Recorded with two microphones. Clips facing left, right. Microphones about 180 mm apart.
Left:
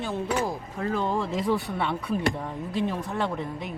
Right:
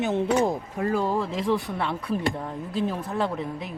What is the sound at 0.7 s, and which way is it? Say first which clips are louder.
Speech: right 1 dB; 10° right (ahead or behind).